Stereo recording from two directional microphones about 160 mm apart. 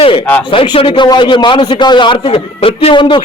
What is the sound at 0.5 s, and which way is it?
A man's voice, 35° left (ahead or behind).